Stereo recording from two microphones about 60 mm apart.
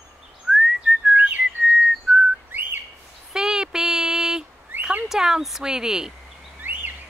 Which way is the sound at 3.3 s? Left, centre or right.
Centre.